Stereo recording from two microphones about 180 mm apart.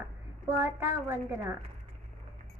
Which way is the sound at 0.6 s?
15° right (ahead or behind).